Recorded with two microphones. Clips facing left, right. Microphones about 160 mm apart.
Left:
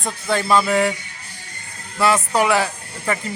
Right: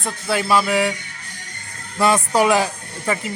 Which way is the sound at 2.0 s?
15° right (ahead or behind).